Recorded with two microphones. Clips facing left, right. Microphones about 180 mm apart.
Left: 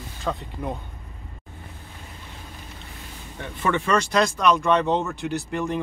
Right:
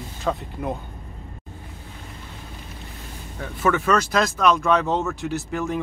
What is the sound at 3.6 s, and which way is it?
Speech, 5° right (ahead or behind).